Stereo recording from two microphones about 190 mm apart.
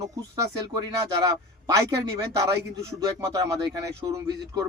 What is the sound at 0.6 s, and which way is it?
A man's voice, 20° right (ahead or behind).